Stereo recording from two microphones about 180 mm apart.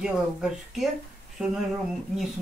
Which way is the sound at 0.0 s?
Centre (ahead or behind).